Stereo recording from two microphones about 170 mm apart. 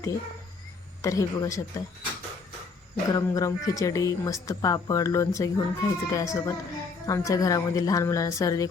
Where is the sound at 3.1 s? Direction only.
20° left (ahead or behind).